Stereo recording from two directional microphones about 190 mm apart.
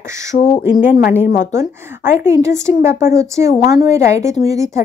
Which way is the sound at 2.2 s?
15° right (ahead or behind).